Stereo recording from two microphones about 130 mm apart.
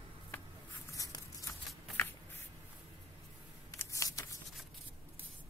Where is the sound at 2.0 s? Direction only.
15° left (ahead or behind).